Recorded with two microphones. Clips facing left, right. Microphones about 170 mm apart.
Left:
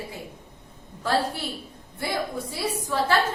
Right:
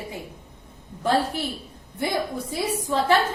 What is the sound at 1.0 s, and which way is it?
A woman's voice, 20° right (ahead or behind).